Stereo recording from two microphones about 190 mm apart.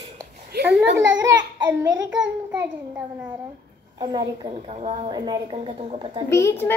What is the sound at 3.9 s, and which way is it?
A child's voice, 25° right (ahead or behind).